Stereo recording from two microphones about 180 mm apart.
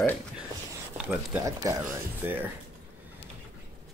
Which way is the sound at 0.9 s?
10° right (ahead or behind).